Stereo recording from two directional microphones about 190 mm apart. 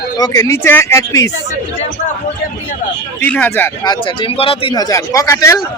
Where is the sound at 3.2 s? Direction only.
10° left (ahead or behind).